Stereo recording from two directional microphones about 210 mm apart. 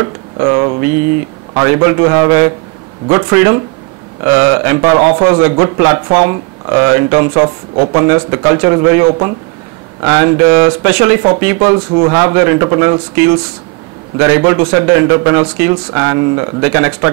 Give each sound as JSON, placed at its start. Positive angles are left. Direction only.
{"t": 0.0, "sound": "a sound", "side_deg": -20}
{"t": 1.5, "sound": "speech", "side_deg": -15}
{"t": 14.1, "sound": "speech", "side_deg": -10}